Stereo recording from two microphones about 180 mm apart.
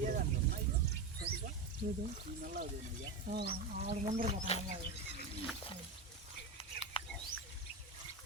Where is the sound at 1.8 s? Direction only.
45° right (ahead or behind).